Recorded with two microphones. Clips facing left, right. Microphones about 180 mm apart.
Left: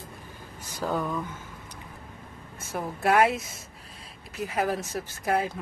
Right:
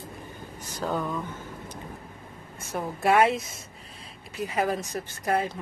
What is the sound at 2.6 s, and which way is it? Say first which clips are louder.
Speech: right 1 dB; centre (ahead or behind).